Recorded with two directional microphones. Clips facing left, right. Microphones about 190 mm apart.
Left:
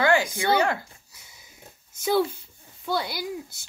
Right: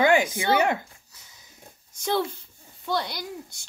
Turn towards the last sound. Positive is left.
turn(degrees=5)  # may be behind; listen again after turning